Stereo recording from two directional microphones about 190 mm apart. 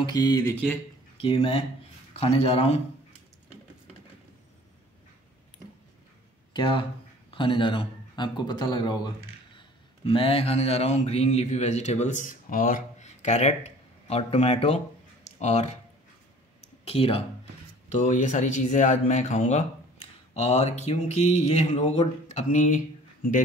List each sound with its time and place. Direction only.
0.0 s speech: 20° left (ahead or behind)
1.1 s speech: 30° left (ahead or behind)
6.5 s speech: 25° left (ahead or behind)
9.6 s mantra: 30° left (ahead or behind)
15.3 s speech: 35° left (ahead or behind)
16.6 s a sound: 30° left (ahead or behind)
17.8 s speech: 40° left (ahead or behind)